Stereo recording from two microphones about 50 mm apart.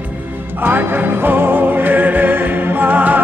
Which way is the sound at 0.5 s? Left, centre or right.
Right.